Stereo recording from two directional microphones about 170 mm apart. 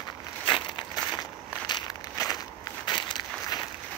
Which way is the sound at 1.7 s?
25° left (ahead or behind).